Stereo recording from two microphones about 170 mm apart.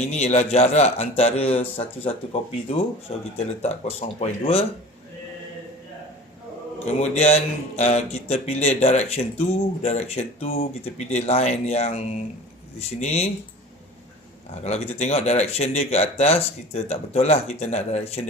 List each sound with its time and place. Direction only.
0.0 s a man's voice: 40° left (ahead or behind)
3.3 s a man's voice: 40° left (ahead or behind)
6.8 s a man's voice: 40° left (ahead or behind)
14.6 s a man's voice: 40° left (ahead or behind)